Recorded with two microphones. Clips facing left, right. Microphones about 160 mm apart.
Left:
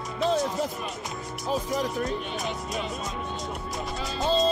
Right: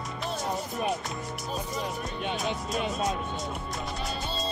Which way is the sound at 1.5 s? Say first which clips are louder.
Left 7 dB; 90° left.